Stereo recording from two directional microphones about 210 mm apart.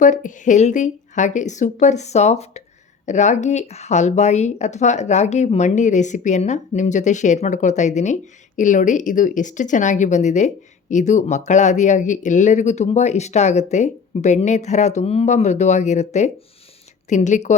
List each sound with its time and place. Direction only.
0.0 s speech: 35° left (ahead or behind)